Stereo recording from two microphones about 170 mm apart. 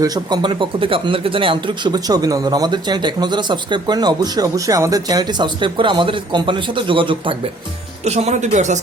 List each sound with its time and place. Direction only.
0.0 s speech: 25° right (ahead or behind)
8.0 s speech: 40° right (ahead or behind)